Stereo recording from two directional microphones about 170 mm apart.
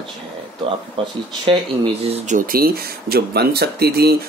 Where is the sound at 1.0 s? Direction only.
30° right (ahead or behind).